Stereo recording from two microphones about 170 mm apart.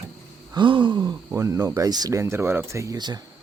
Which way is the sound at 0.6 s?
30° right (ahead or behind).